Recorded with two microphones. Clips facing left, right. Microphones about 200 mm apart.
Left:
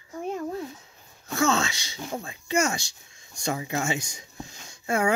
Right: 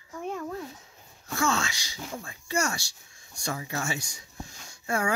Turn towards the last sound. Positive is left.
turn(degrees=20)  # may be behind; listen again after turning